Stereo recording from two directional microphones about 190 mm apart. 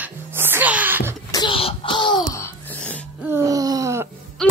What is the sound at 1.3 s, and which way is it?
Throat clearing, 25° left (ahead or behind).